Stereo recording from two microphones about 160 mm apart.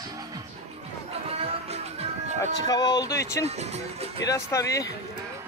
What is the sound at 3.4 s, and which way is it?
Speech, 40° right (ahead or behind).